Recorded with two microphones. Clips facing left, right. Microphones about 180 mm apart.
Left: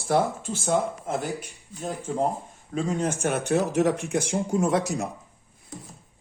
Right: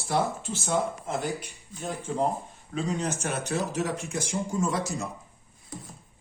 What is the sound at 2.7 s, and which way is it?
Speech, 50° left (ahead or behind).